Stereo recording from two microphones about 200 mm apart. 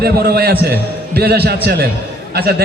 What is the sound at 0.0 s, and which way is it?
A man's voice, 55° right (ahead or behind).